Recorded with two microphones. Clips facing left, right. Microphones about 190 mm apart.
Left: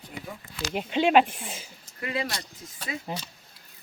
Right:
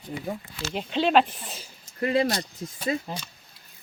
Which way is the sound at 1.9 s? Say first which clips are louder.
Right 8 dB; 35° right (ahead or behind).